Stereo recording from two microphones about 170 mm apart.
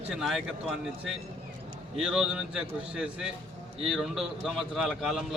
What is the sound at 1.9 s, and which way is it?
A man's voice, 5° right (ahead or behind).